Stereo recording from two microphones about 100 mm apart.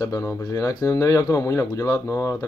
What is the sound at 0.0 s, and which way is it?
Speech, 30° left (ahead or behind).